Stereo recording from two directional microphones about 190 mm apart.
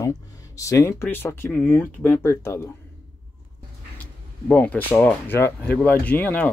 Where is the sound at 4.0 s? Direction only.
10° left (ahead or behind).